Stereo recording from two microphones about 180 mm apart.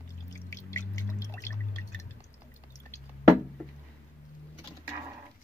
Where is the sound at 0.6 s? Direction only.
15° left (ahead or behind).